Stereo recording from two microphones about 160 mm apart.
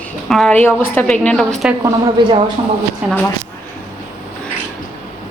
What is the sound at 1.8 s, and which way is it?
Speech, 25° right (ahead or behind).